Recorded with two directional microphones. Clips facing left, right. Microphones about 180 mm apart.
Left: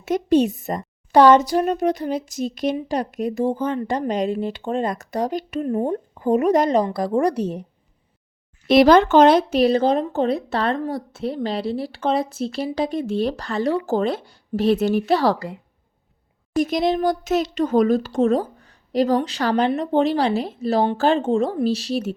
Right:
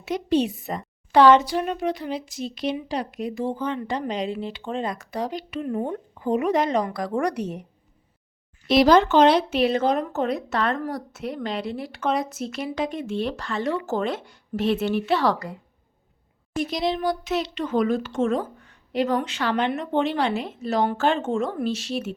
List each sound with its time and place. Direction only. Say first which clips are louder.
0.0 s a woman's voice: left 5 dB; 45° left (ahead or behind); by 7.6 s 30° left (ahead or behind)
8.6 s speech: left 4 dB; 55° left (ahead or behind); by 15.5 s 30° left (ahead or behind)
16.6 s speech: left 5 dB; 50° left (ahead or behind)